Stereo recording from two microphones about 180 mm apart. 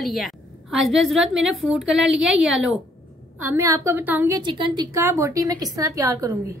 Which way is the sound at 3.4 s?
15° right (ahead or behind).